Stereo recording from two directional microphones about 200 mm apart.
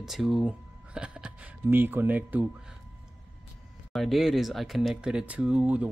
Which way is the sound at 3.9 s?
Centre (ahead or behind).